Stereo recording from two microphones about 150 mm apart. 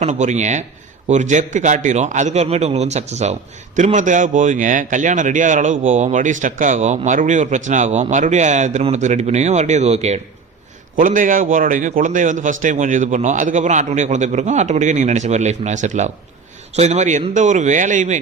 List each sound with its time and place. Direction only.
0.0 s a man's voice: 50° right (ahead or behind)
10.9 s a man's voice: 60° right (ahead or behind)